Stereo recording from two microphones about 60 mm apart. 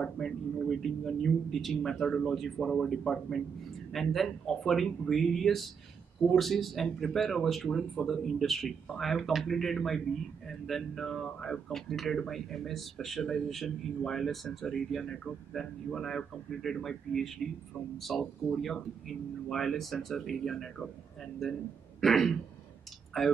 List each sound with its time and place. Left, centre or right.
0.0 s speech: centre
19.5 s speech: centre